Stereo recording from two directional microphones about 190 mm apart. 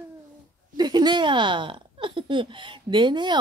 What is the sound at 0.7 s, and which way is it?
Speech, 20° right (ahead or behind).